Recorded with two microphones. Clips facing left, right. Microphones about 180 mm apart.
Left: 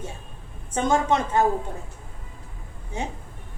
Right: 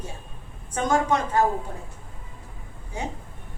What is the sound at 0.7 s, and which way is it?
Speech, 25° left (ahead or behind).